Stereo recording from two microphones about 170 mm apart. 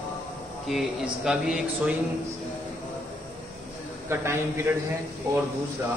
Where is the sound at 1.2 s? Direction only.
5° right (ahead or behind).